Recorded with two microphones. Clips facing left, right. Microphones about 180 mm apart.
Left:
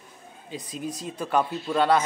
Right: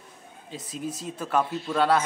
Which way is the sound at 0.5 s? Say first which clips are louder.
Left 1 dB; 5° right (ahead or behind).